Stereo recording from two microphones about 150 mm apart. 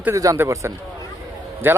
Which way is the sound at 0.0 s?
20° right (ahead or behind).